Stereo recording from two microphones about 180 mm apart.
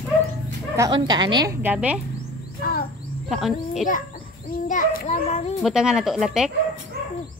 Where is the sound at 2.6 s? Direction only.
55° left (ahead or behind).